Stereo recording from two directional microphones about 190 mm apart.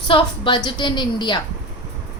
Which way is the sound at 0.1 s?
25° left (ahead or behind).